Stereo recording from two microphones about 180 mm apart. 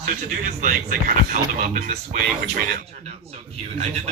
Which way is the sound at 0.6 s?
50° right (ahead or behind).